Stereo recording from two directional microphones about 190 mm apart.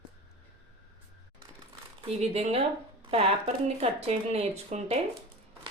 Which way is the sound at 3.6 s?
35° right (ahead or behind).